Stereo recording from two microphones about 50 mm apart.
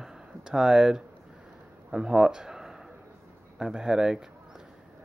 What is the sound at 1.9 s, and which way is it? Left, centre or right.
Speech, centre.